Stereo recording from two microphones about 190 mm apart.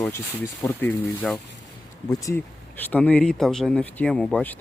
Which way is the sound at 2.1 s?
15° left (ahead or behind).